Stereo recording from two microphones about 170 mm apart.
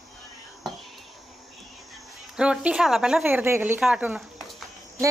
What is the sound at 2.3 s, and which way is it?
Speech, 5° right (ahead or behind).